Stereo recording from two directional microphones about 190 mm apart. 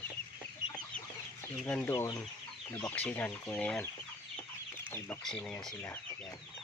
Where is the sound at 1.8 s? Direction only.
20° left (ahead or behind).